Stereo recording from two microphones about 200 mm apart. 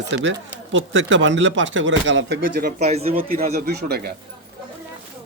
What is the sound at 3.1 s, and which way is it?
Speech, 45° right (ahead or behind).